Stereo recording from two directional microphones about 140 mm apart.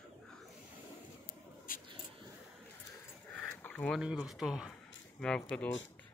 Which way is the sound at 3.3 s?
5° left (ahead or behind).